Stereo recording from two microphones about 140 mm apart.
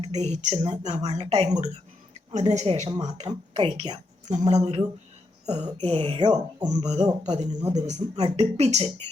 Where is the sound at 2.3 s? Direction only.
55° right (ahead or behind).